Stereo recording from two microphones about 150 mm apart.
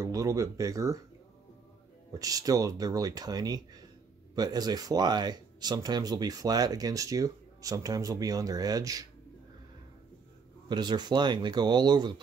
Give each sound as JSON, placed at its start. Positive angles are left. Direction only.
{"t": 0.0, "sound": "speech", "side_deg": -20}
{"t": 2.1, "sound": "speech", "side_deg": -25}
{"t": 10.7, "sound": "speech", "side_deg": -30}